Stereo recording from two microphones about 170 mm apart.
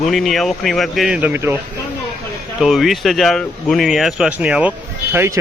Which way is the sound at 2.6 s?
Centre (ahead or behind).